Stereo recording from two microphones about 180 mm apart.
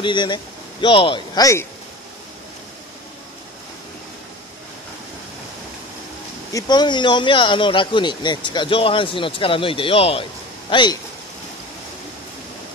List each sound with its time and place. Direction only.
0.0 s speech: 25° left (ahead or behind)
6.5 s speech: 25° left (ahead or behind)